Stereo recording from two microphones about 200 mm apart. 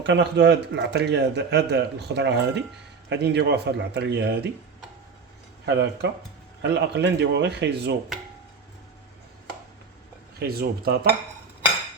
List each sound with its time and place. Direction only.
0.0 s speech: 60° right (ahead or behind)
5.6 s speech: 60° right (ahead or behind)
10.4 s speech: 50° right (ahead or behind)